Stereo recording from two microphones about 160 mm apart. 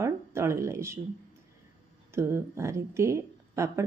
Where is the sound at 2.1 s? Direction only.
15° right (ahead or behind).